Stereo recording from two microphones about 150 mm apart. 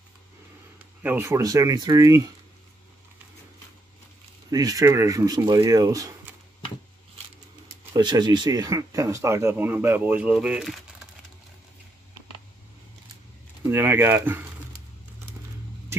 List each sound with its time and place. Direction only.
1.0 s speech: 15° right (ahead or behind)
4.5 s speech: 25° right (ahead or behind)
7.6 s speech: 25° right (ahead or behind); by 10.8 s 5° right (ahead or behind)
13.7 s a sound: 15° right (ahead or behind)